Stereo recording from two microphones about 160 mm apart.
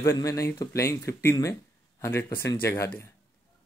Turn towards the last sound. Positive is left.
turn(degrees=15)  # may be behind; listen again after turning